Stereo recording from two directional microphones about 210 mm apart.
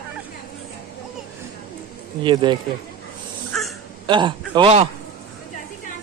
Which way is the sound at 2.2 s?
20° right (ahead or behind).